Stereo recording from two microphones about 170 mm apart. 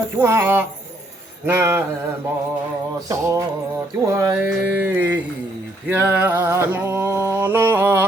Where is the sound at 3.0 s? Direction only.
20° right (ahead or behind).